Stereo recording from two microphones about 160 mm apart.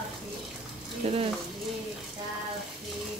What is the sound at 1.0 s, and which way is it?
Speech, 40° right (ahead or behind).